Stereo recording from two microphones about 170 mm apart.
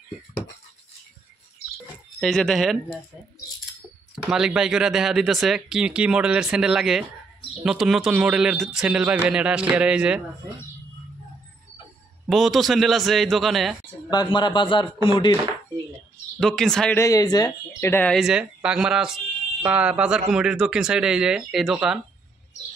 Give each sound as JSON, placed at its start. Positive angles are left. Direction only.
{"t": 2.1, "sound": "speech", "side_deg": 0}
{"t": 4.1, "sound": "a man's voice", "side_deg": -5}
{"t": 12.3, "sound": "speech", "side_deg": 0}
{"t": 14.3, "sound": "speech", "side_deg": 30}
{"t": 16.3, "sound": "speech", "side_deg": 0}
{"t": 16.9, "sound": "speech", "side_deg": 20}